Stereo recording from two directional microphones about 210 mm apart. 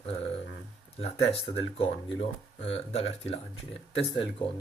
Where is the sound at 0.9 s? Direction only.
30° left (ahead or behind).